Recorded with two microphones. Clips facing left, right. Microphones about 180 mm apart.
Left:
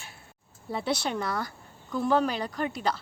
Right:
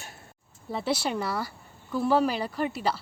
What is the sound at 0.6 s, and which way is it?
A woman's voice, centre (ahead or behind).